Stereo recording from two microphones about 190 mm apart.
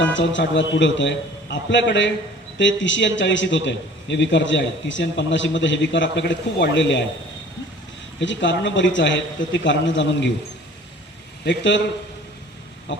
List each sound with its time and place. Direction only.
0.0 s a man's voice: 75° left (ahead or behind)
8.2 s a man's voice: 75° left (ahead or behind)
11.4 s a man's voice: 70° left (ahead or behind)
12.9 s a sound: 70° left (ahead or behind)